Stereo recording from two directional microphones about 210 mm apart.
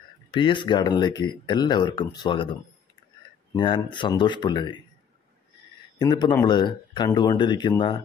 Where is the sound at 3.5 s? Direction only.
20° left (ahead or behind).